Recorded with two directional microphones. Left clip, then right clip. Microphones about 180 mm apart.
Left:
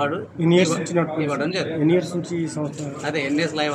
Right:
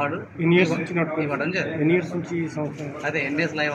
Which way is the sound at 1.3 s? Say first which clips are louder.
Left 1 dB; 15° left (ahead or behind).